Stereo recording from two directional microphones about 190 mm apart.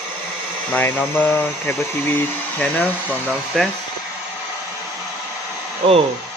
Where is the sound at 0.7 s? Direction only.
10° left (ahead or behind).